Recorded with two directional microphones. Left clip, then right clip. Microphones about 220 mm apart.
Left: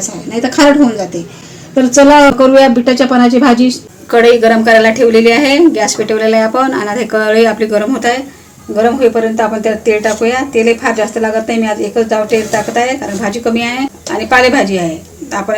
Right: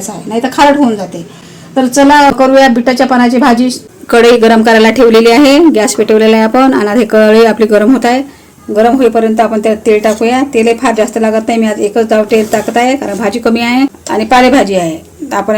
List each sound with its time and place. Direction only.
1.7 s speech: 45° right (ahead or behind)